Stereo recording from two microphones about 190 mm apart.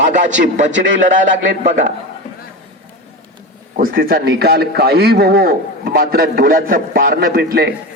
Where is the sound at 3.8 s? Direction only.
50° right (ahead or behind).